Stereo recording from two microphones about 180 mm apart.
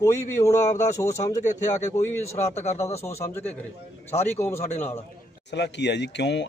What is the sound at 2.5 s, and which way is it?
Speech, 35° left (ahead or behind).